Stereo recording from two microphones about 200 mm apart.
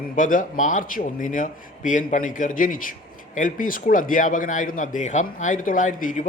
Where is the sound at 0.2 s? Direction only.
40° left (ahead or behind).